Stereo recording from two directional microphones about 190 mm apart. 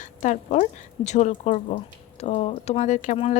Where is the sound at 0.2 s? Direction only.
40° left (ahead or behind).